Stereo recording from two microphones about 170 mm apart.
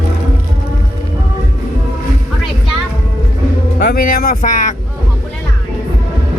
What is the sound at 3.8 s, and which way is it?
Vehicle, 60° left (ahead or behind).